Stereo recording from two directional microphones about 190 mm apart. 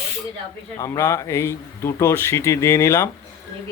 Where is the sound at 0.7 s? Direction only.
20° left (ahead or behind).